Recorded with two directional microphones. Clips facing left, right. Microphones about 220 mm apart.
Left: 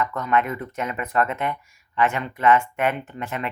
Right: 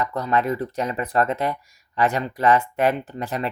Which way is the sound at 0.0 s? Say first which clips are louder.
Right 1 dB; 35° right (ahead or behind).